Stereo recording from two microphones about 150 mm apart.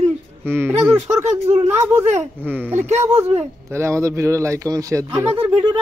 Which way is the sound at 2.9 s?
45° right (ahead or behind).